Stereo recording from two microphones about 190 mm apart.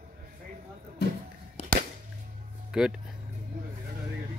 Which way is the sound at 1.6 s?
35° left (ahead or behind).